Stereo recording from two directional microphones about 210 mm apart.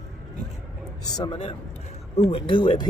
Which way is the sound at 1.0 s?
20° left (ahead or behind).